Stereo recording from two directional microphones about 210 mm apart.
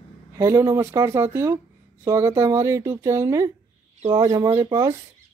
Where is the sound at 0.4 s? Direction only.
15° right (ahead or behind).